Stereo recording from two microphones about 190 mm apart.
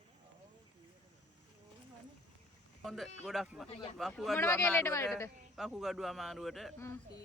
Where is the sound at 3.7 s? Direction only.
30° left (ahead or behind).